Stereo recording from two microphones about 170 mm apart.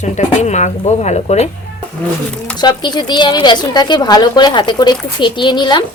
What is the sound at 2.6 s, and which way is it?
A woman's voice, 25° left (ahead or behind).